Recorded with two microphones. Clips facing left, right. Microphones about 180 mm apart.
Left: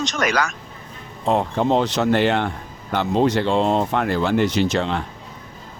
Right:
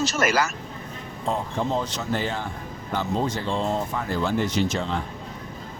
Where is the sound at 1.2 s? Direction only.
70° left (ahead or behind).